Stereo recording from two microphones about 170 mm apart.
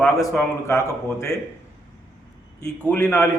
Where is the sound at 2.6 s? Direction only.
10° left (ahead or behind).